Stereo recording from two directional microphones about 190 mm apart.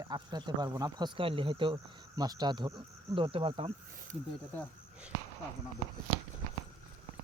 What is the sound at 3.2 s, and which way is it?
Speech, 30° right (ahead or behind).